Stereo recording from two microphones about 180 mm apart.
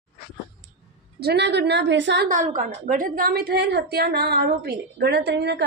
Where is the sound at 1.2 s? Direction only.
65° right (ahead or behind).